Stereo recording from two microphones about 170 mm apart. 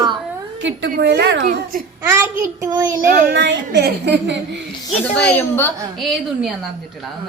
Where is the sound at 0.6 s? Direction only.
90° right.